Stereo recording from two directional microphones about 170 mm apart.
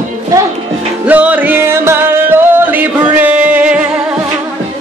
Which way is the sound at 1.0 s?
10° right (ahead or behind).